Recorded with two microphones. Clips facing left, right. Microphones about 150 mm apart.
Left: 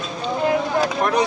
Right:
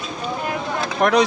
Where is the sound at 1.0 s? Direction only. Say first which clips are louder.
Right 6 dB; 90° right.